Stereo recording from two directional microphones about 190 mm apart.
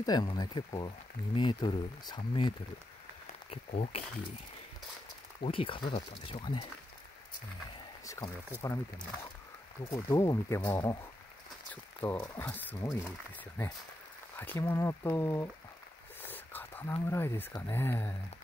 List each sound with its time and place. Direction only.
0.0 s speech: 20° left (ahead or behind)
5.4 s speech: 30° left (ahead or behind)
8.0 s rowboat: 15° left (ahead or behind)
8.6 s speech: 20° left (ahead or behind)